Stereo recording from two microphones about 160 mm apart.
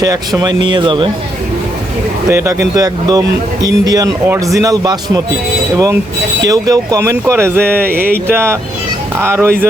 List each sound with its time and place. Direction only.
0.0 s speech: 25° right (ahead or behind)
2.3 s speech: 15° right (ahead or behind)